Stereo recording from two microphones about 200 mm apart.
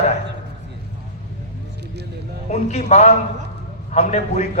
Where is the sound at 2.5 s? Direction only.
35° left (ahead or behind).